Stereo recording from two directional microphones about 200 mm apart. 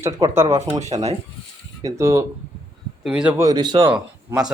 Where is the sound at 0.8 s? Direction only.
30° right (ahead or behind).